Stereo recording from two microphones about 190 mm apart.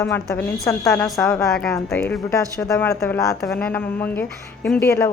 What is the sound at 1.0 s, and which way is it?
A woman's voice, centre (ahead or behind).